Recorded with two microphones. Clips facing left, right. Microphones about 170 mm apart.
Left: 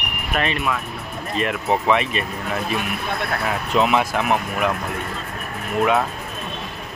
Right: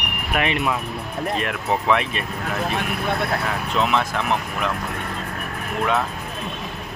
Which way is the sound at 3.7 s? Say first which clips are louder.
Left 3 dB; 10° left (ahead or behind).